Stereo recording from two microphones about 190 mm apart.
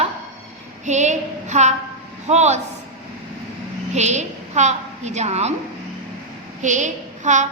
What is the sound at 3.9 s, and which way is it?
A woman's voice, 35° right (ahead or behind).